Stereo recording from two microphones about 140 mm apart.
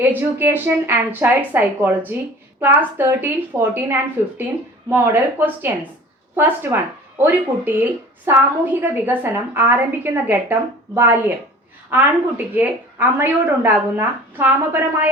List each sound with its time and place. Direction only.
0.3 s a woman's voice: 15° right (ahead or behind)